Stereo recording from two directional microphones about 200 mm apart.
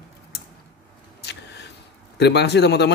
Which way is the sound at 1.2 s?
55° left (ahead or behind).